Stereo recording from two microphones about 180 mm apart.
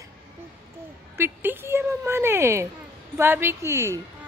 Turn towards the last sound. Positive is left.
turn(degrees=-15)  # may be behind; listen again after turning